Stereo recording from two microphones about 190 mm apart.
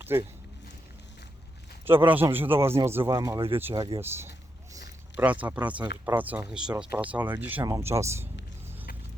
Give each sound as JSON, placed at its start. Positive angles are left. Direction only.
{"t": 0.0, "sound": "speech", "side_deg": -10}
{"t": 1.8, "sound": "speech", "side_deg": -10}
{"t": 3.6, "sound": "speech", "side_deg": -10}